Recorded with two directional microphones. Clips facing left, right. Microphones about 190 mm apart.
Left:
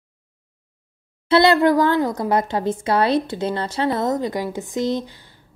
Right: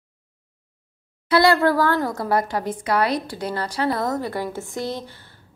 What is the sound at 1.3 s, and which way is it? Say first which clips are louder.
A woman's voice: left 2 dB; 20° left (ahead or behind).